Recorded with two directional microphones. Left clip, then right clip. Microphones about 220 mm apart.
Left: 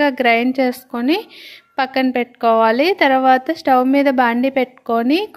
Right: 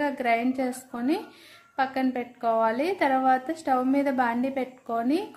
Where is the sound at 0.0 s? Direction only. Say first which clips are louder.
Left 11 dB; 35° left (ahead or behind).